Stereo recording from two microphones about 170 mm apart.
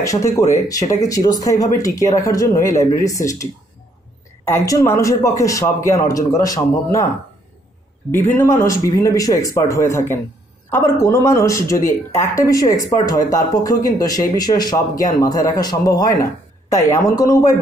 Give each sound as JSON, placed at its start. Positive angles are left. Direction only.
{"t": 0.0, "sound": "speech", "side_deg": 20}
{"t": 4.5, "sound": "speech", "side_deg": 15}
{"t": 8.1, "sound": "speech", "side_deg": 15}